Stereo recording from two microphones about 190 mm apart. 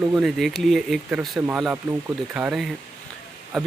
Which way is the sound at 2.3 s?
5° right (ahead or behind).